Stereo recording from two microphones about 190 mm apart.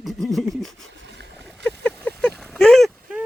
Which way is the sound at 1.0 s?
65° right (ahead or behind).